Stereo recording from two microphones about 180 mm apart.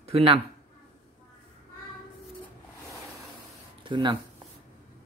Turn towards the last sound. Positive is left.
turn(degrees=-25)  # may be behind; listen again after turning